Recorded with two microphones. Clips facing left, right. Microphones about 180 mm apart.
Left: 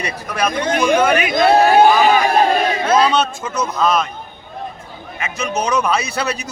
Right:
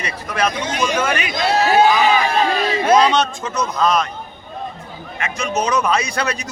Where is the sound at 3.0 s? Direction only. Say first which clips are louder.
Even; 5° left (ahead or behind).